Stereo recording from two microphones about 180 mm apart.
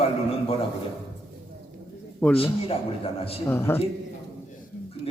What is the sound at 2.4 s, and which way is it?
A man's voice, 30° left (ahead or behind).